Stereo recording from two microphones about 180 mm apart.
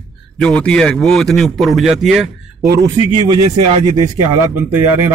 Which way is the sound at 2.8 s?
25° right (ahead or behind).